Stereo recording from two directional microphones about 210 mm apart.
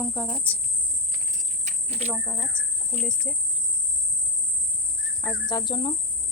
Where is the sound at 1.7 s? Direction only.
35° right (ahead or behind).